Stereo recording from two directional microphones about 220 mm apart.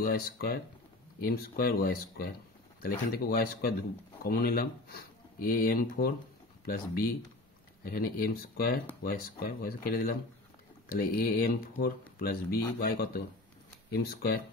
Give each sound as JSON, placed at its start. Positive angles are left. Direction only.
{"t": 0.0, "sound": "speech", "side_deg": 45}